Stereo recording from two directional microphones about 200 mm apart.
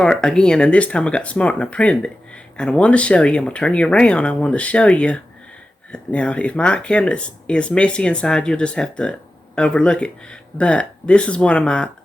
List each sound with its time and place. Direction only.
0.0 s speech: 5° left (ahead or behind)